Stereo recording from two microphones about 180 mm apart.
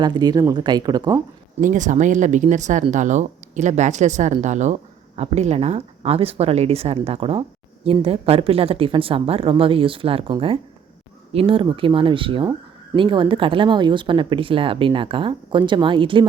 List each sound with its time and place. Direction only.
0.0 s speech: 25° right (ahead or behind)
1.6 s speech: 45° right (ahead or behind); by 16.2 s 25° right (ahead or behind)